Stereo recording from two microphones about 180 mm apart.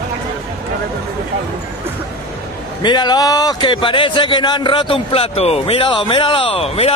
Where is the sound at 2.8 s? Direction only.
25° left (ahead or behind).